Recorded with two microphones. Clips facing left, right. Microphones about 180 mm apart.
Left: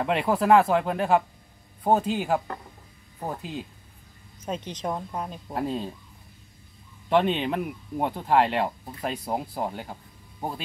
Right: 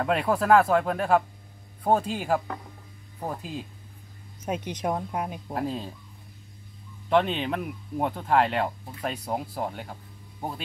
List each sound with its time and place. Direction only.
0.0 s speech: 5° left (ahead or behind)
4.5 s speech: 10° right (ahead or behind)
5.5 s speech: centre (ahead or behind)
7.1 s speech: centre (ahead or behind)